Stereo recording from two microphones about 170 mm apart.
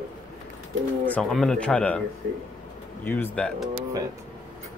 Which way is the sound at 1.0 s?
5° left (ahead or behind).